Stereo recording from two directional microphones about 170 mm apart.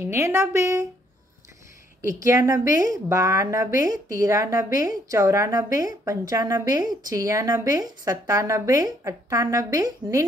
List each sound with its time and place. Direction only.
0.0 s a woman's voice: 15° right (ahead or behind)
2.0 s a woman's voice: 15° right (ahead or behind)